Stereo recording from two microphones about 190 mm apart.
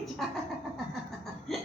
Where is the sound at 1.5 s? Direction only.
Centre (ahead or behind).